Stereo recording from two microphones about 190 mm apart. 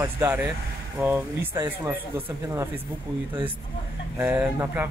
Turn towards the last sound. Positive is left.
turn(degrees=-10)  # may be behind; listen again after turning